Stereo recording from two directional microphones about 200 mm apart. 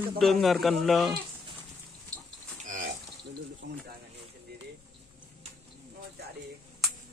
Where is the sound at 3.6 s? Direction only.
55° right (ahead or behind).